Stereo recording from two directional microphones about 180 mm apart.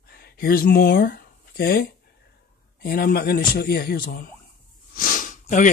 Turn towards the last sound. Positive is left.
turn(degrees=45)  # may be behind; listen again after turning